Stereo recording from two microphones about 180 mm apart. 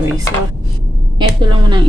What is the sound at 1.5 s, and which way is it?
Speech, 25° right (ahead or behind).